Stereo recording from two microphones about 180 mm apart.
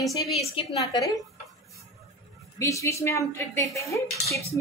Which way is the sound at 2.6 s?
15° left (ahead or behind).